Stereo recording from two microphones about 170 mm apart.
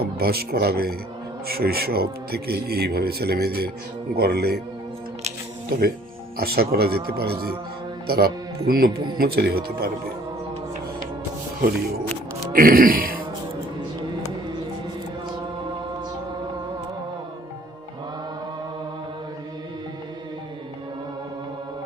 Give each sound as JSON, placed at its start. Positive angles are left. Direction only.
{"t": 0.0, "sound": "speech", "side_deg": -65}
{"t": 6.3, "sound": "speech", "side_deg": -65}
{"t": 12.5, "sound": "speech", "side_deg": -55}